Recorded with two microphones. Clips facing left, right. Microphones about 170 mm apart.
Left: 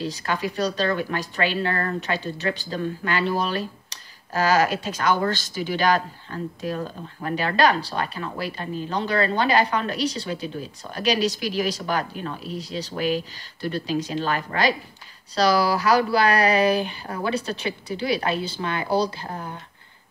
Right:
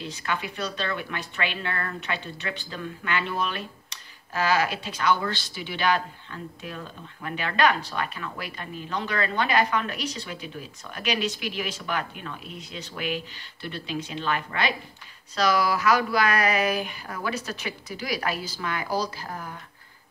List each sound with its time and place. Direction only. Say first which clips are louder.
0.0 s a woman's voice: left 5 dB; 35° left (ahead or behind)